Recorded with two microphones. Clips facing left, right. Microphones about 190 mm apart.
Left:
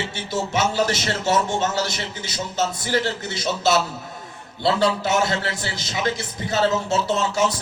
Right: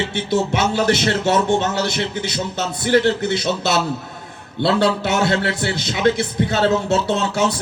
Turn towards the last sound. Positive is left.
turn(degrees=-65)  # may be behind; listen again after turning